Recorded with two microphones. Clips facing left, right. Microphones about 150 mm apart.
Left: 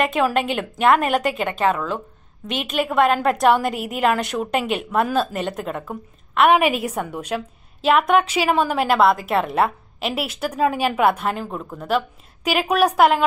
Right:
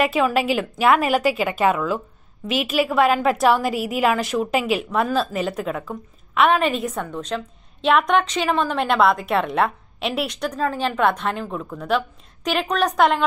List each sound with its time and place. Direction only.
0.0 s a woman's voice: 5° right (ahead or behind)